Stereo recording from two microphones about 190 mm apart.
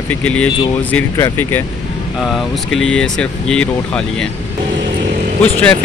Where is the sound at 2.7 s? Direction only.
5° left (ahead or behind).